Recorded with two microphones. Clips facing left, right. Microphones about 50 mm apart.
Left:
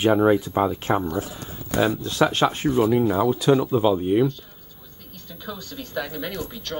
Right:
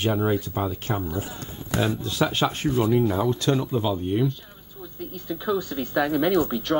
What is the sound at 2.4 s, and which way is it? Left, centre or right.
Speech, left.